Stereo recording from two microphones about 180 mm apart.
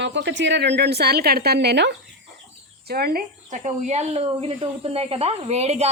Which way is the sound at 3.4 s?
40° right (ahead or behind).